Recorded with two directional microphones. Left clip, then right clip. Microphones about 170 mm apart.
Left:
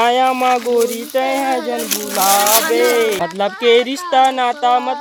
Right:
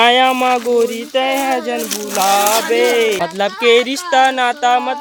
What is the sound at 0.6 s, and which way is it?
Speech, 5° right (ahead or behind).